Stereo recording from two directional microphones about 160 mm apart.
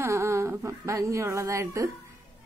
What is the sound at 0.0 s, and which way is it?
A woman's voice, 15° right (ahead or behind).